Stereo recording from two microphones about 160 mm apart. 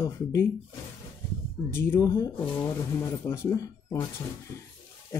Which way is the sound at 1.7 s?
15° left (ahead or behind).